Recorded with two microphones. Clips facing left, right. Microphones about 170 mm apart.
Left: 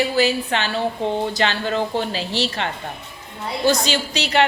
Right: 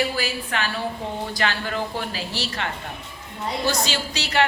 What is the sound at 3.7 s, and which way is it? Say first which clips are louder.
Speech: left 9 dB; 20° left (ahead or behind).